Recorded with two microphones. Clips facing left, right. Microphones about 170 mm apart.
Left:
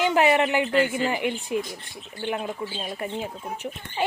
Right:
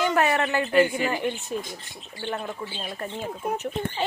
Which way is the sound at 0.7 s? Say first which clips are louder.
Right 2 dB; 15° right (ahead or behind).